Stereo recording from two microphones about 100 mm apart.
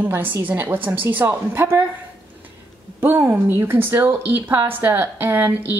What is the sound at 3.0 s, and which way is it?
A woman's voice, 20° right (ahead or behind).